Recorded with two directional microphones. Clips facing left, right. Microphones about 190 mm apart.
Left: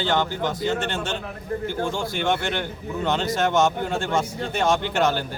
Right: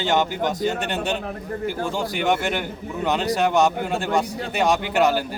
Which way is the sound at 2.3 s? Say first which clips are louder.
Right 2 dB; 10° right (ahead or behind).